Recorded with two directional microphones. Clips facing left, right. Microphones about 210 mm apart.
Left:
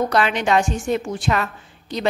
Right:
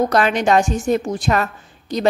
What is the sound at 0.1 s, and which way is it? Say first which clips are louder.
A woman's voice: right 3 dB; 40° right (ahead or behind).